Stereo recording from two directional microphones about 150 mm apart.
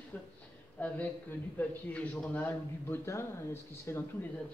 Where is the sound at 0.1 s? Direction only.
10° left (ahead or behind).